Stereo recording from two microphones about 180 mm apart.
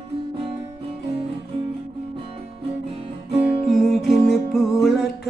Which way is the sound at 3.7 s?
Centre (ahead or behind).